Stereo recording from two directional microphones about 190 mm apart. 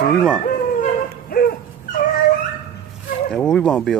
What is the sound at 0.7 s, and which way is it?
Dog, 50° left (ahead or behind).